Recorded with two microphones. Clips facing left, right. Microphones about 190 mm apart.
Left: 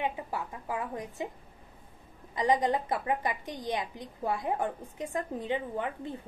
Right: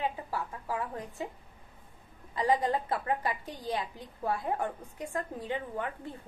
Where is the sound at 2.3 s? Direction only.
20° left (ahead or behind).